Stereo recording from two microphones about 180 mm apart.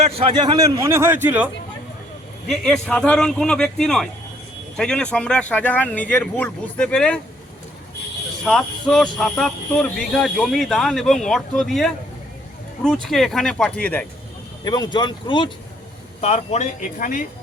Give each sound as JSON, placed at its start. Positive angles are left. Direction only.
{"t": 0.0, "sound": "a man's voice", "side_deg": -30}
{"t": 2.5, "sound": "speech", "side_deg": 0}
{"t": 8.4, "sound": "speech", "side_deg": 0}
{"t": 14.6, "sound": "speech", "side_deg": 20}
{"t": 16.2, "sound": "speech", "side_deg": 35}